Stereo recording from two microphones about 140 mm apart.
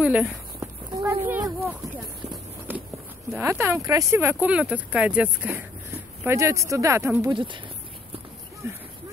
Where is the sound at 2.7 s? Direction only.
15° right (ahead or behind).